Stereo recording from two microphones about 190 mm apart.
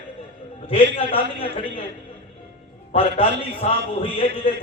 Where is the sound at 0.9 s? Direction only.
30° left (ahead or behind).